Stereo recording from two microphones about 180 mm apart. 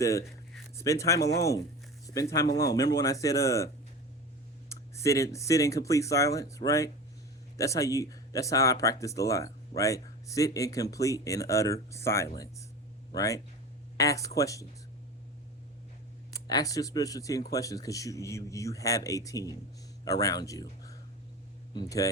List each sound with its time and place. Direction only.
0.0 s speech: 15° left (ahead or behind)
4.7 s speech: 15° left (ahead or behind)
16.5 s speech: 20° left (ahead or behind)